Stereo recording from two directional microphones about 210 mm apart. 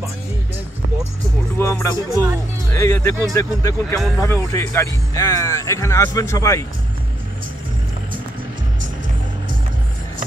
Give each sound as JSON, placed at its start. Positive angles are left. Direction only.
{"t": 1.6, "sound": "speech", "side_deg": 10}